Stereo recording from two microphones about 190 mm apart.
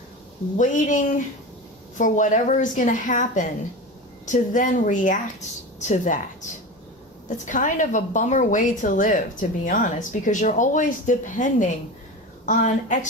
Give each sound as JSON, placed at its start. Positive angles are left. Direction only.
{"t": 0.6, "sound": "a woman's voice", "side_deg": 45}
{"t": 7.2, "sound": "a woman's voice", "side_deg": 45}